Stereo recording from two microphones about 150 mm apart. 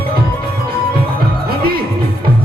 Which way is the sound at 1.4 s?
90° right.